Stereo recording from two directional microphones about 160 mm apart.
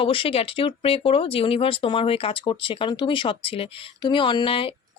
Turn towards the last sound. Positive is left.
turn(degrees=35)  # may be behind; listen again after turning